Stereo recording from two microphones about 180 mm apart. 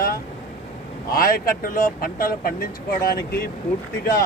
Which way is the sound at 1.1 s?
50° left (ahead or behind).